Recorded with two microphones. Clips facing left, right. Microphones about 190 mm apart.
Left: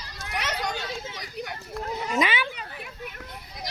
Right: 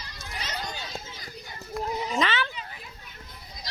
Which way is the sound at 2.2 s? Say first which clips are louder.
Left 2 dB; 10° left (ahead or behind).